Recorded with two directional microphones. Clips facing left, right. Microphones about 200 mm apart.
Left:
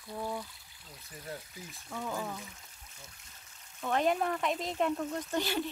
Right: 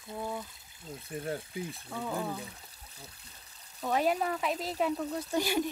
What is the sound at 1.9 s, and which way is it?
Speech, 10° right (ahead or behind).